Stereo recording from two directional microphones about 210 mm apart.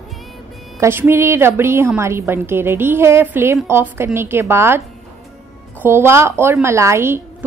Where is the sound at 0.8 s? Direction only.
10° right (ahead or behind).